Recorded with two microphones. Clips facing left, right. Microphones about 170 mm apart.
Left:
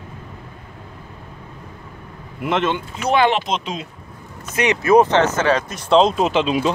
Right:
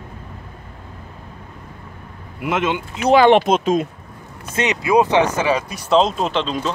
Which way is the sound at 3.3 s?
50° right (ahead or behind).